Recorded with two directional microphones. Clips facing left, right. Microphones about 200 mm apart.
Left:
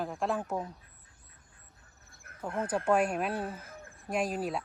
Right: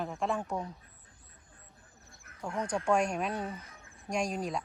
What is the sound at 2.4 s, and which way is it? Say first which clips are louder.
Speech: left 1 dB; 5° left (ahead or behind).